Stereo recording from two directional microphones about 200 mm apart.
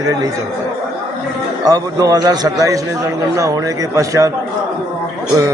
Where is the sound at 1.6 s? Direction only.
20° right (ahead or behind).